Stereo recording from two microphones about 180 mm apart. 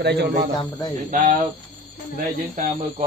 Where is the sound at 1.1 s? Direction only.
45° right (ahead or behind).